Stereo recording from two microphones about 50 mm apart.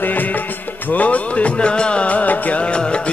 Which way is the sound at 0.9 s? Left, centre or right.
Left.